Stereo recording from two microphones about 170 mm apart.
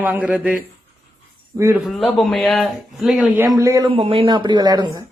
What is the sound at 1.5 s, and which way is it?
Speech, 15° right (ahead or behind).